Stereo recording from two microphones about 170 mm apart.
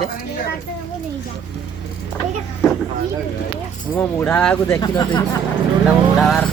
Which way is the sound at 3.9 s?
10° left (ahead or behind).